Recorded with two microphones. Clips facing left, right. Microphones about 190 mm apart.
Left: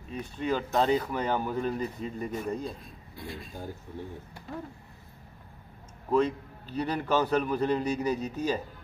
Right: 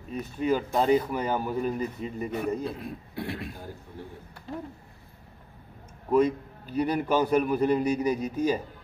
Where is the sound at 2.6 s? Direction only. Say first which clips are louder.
Right 5 dB; 65° right (ahead or behind).